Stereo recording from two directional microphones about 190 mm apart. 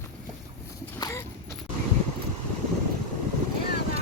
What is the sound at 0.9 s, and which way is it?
Horse, 20° left (ahead or behind).